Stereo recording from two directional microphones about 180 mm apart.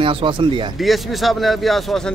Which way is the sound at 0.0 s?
30° right (ahead or behind).